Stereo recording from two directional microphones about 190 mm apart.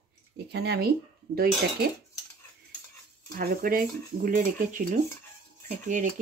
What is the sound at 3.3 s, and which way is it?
Speech, 50° right (ahead or behind).